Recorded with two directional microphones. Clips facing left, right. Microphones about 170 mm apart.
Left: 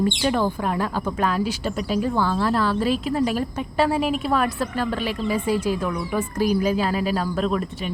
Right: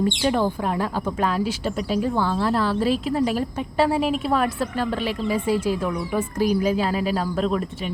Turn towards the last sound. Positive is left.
turn(degrees=-30)  # may be behind; listen again after turning